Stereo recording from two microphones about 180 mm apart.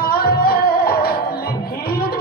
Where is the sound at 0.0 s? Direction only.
55° left (ahead or behind).